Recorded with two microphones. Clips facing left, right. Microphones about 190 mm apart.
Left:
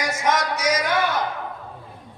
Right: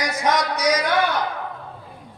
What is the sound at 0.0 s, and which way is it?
Speech, 35° right (ahead or behind).